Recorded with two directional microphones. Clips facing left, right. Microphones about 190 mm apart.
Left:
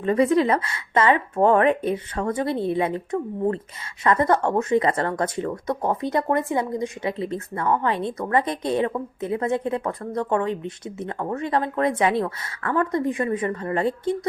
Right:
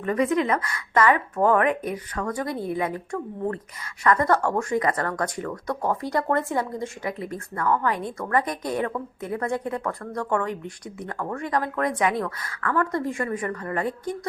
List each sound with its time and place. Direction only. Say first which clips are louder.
0.0 s speech: left 4 dB; 30° left (ahead or behind)